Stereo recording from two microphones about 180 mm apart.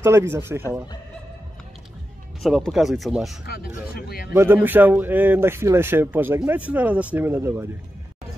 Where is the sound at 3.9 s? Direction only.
55° left (ahead or behind).